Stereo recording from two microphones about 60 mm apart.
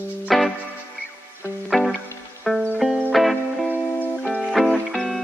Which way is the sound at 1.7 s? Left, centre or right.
Centre.